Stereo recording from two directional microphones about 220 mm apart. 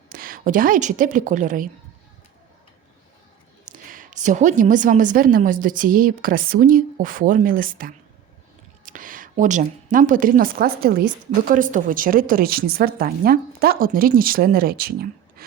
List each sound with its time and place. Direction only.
0.1 s a woman's voice: 40° right (ahead or behind)
3.7 s a woman's voice: 40° right (ahead or behind)
15.4 s a sound: 45° right (ahead or behind)